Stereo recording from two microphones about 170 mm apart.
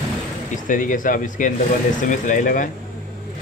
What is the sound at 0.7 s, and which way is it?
Speech, 50° left (ahead or behind).